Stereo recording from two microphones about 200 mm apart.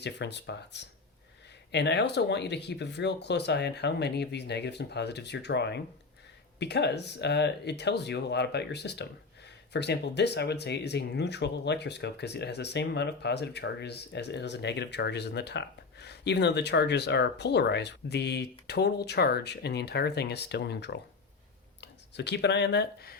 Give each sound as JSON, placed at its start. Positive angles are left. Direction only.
{"t": 0.0, "sound": "speech", "side_deg": 60}